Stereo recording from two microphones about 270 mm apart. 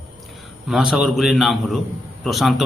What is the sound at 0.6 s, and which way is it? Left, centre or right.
A man's voice, centre.